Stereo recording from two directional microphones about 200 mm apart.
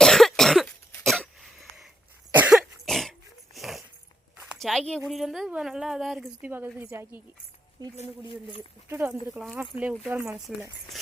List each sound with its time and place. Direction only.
0.0 s cough: centre (ahead or behind)
4.4 s a woman's voice: centre (ahead or behind)
7.9 s speech: 30° left (ahead or behind)
8.9 s a woman's voice: 10° right (ahead or behind)